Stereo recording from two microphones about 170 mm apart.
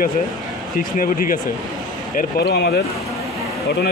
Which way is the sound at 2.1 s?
75° left (ahead or behind).